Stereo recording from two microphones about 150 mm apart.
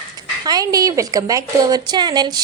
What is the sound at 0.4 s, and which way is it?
A woman's voice, 25° right (ahead or behind).